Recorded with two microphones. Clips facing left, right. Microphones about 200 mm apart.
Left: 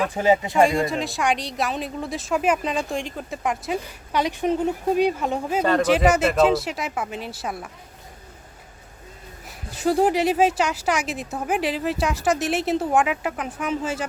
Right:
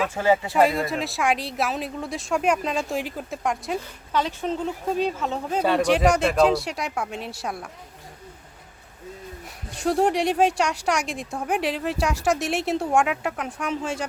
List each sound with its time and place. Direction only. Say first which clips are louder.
0.1 s speech: left 2 dB; 15° left (ahead or behind)
0.5 s speech: left 2 dB; 5° right (ahead or behind)
4.1 s speech: left 3 dB; 15° left (ahead or behind)
5.6 s speech: left 1 dB; centre (ahead or behind)
9.6 s speech: left 2 dB; centre (ahead or behind)